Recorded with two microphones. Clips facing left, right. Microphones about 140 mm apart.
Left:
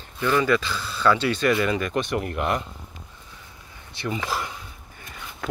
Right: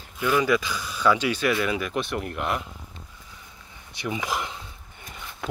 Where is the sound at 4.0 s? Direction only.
15° right (ahead or behind).